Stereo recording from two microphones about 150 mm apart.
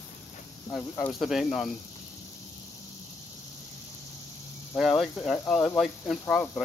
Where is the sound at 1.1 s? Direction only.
Centre (ahead or behind).